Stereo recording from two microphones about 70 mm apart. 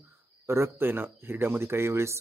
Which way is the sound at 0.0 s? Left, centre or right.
Right.